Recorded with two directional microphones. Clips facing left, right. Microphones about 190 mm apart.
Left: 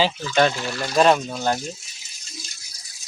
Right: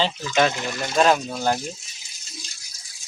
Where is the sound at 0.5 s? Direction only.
20° right (ahead or behind).